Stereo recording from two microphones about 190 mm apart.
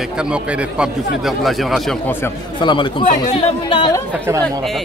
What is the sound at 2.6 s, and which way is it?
Speech, 25° left (ahead or behind).